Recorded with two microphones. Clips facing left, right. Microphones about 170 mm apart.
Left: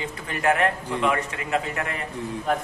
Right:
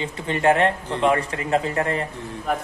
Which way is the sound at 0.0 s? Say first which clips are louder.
Right 4 dB; 25° right (ahead or behind).